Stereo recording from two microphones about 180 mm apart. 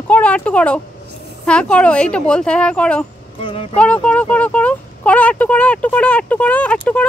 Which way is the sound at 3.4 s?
30° left (ahead or behind).